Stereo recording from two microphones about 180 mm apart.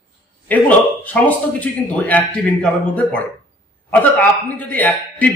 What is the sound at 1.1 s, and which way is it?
A man's voice, 10° left (ahead or behind).